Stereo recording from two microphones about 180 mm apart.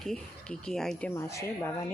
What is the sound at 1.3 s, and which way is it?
Speech, 15° left (ahead or behind).